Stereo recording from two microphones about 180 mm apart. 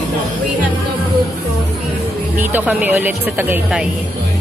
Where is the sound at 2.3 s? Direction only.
10° right (ahead or behind).